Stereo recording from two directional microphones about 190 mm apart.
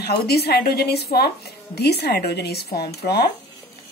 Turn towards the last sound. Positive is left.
turn(degrees=55)  # may be behind; listen again after turning